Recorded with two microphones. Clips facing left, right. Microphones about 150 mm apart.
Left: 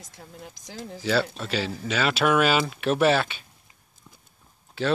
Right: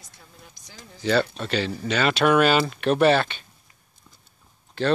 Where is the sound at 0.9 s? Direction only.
5° left (ahead or behind).